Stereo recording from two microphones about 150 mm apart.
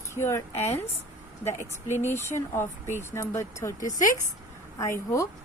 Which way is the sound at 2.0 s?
15° left (ahead or behind).